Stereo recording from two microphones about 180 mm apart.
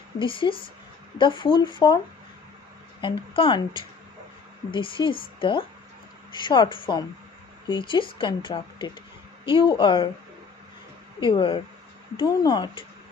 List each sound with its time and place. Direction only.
0.2 s a woman's voice: 30° left (ahead or behind)
3.0 s a woman's voice: 30° left (ahead or behind)
11.1 s a woman's voice: 30° left (ahead or behind)